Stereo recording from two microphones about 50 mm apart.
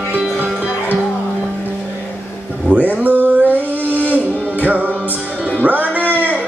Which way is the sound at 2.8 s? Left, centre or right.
Right.